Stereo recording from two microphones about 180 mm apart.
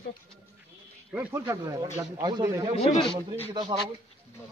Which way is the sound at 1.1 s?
10° right (ahead or behind).